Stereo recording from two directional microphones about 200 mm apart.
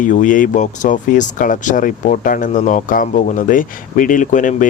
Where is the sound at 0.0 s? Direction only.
40° left (ahead or behind).